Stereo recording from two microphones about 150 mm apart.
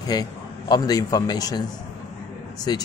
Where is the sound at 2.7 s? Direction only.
30° left (ahead or behind).